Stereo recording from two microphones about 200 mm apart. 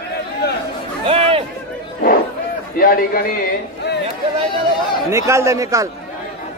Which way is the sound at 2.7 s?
50° left (ahead or behind).